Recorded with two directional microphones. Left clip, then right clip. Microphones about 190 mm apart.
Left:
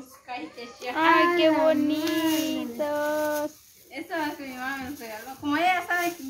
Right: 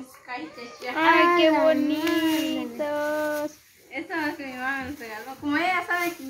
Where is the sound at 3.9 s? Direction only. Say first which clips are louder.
Right 1 dB; 50° left (ahead or behind); by 6.0 s 35° left (ahead or behind).